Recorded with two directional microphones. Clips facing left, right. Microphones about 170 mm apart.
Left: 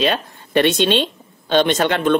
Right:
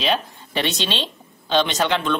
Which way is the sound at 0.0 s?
55° left (ahead or behind).